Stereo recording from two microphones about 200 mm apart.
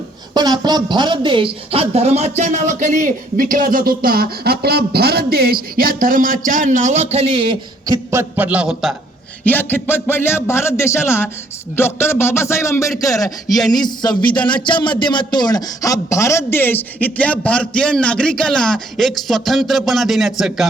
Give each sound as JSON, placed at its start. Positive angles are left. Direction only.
{"t": 0.3, "sound": "a woman's voice", "side_deg": -20}
{"t": 8.1, "sound": "a man's voice", "side_deg": -10}
{"t": 9.4, "sound": "a man's voice", "side_deg": 10}